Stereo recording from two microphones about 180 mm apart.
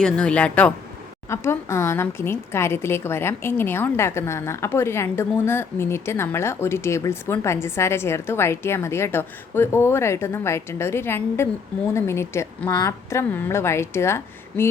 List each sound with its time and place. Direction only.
0.0 s a woman's voice: 5° left (ahead or behind)